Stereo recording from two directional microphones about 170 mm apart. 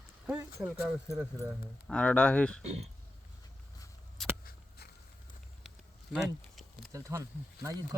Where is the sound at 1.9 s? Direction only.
5° left (ahead or behind).